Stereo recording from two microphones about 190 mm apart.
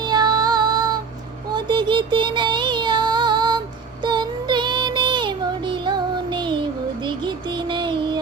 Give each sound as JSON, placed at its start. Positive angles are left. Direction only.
{"t": 0.0, "sound": "music", "side_deg": -20}
{"t": 1.5, "sound": "child singing", "side_deg": -25}